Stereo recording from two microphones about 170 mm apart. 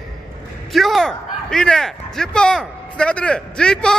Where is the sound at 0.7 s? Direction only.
Centre (ahead or behind).